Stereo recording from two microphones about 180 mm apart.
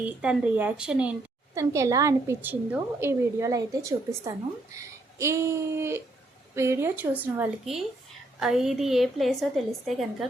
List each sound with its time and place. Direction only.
0.0 s a woman's voice: 5° right (ahead or behind)
1.5 s a woman's voice: 15° right (ahead or behind); by 10.2 s centre (ahead or behind)